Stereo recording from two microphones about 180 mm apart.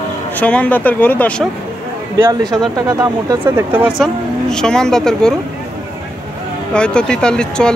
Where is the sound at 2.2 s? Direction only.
20° right (ahead or behind); by 5.3 s 5° left (ahead or behind).